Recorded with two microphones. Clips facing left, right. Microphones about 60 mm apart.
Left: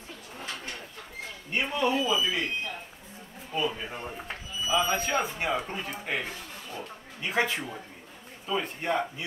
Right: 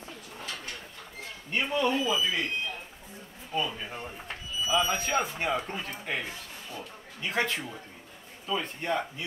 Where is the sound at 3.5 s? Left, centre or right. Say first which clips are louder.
Left 1 dB; centre.